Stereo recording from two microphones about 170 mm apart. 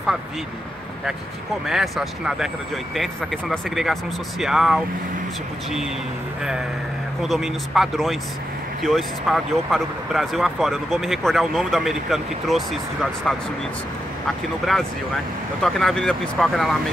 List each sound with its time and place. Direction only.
1.7 s speech: 5° right (ahead or behind)
7.2 s speech: centre (ahead or behind)